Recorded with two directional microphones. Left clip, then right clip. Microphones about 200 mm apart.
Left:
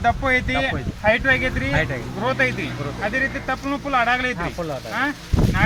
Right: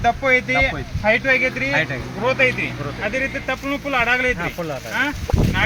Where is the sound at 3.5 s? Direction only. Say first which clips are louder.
Right 1 dB; 45° right (ahead or behind).